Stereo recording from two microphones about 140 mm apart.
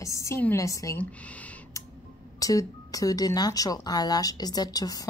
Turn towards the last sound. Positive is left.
turn(degrees=25)  # may be behind; listen again after turning